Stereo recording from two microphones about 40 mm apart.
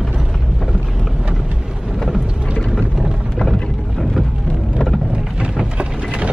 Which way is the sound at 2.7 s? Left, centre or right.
Centre.